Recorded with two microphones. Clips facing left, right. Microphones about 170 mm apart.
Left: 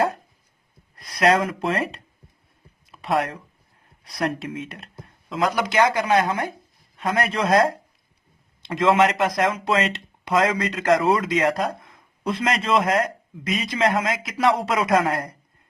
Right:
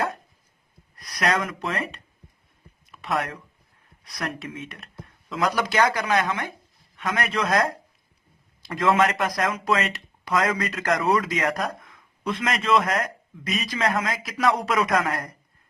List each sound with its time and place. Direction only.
0.9 s speech: 25° left (ahead or behind)